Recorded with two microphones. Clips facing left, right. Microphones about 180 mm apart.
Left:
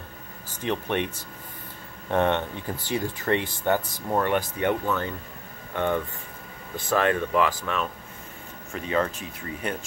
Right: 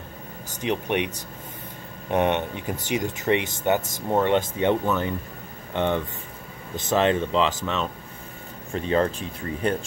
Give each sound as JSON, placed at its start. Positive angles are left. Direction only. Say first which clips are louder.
{"t": 0.6, "sound": "speech", "louder": "right 2 dB", "side_deg": -15}